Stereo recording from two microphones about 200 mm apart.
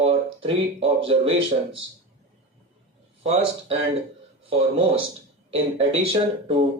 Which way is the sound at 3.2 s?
30° right (ahead or behind).